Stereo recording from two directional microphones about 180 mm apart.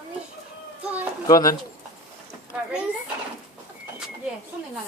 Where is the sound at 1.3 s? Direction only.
20° left (ahead or behind).